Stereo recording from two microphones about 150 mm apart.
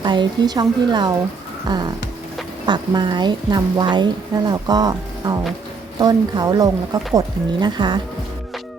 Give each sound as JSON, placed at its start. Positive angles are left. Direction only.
{"t": 0.0, "sound": "a woman's voice", "side_deg": -30}